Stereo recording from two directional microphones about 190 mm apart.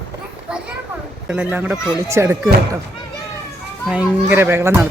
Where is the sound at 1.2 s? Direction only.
5° right (ahead or behind).